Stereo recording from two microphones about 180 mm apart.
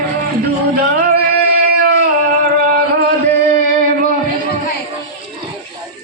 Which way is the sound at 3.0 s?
55° right (ahead or behind).